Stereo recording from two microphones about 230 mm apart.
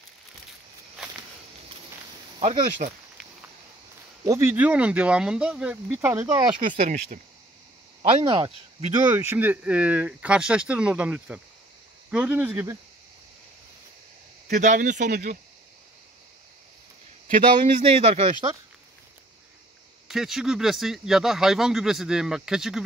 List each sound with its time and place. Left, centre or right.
2.3 s a sound: right
2.8 s speech: right
4.2 s speech: centre
6.8 s speech: right
8.2 s speech: right
9.1 s speech: centre
14.6 s speech: right
17.3 s speech: right
20.1 s speech: centre